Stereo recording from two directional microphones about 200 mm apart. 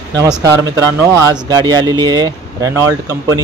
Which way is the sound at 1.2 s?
20° right (ahead or behind).